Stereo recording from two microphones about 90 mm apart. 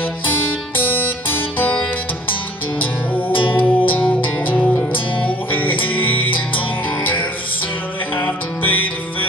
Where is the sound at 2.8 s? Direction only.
20° left (ahead or behind).